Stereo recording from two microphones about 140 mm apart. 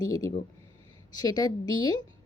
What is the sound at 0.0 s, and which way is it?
A woman's voice, 25° left (ahead or behind).